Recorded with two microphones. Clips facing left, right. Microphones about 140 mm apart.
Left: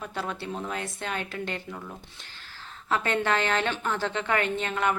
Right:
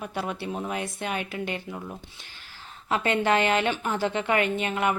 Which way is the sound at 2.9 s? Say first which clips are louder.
Right 3 dB; 15° right (ahead or behind).